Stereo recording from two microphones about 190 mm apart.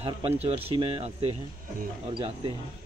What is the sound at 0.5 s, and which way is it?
Speech, 30° right (ahead or behind).